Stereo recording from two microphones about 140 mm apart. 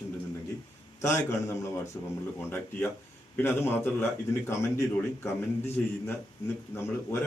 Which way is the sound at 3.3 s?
15° left (ahead or behind).